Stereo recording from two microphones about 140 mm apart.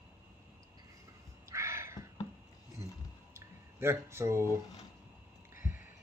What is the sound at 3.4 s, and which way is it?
Speech, 20° right (ahead or behind).